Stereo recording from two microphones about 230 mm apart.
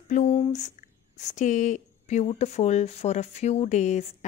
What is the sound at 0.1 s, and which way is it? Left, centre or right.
Speech, left.